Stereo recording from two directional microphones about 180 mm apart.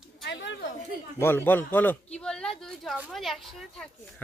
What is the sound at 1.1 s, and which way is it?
A man's voice, 10° left (ahead or behind).